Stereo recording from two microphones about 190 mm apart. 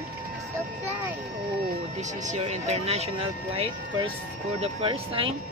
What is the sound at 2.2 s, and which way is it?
Speech, 40° right (ahead or behind).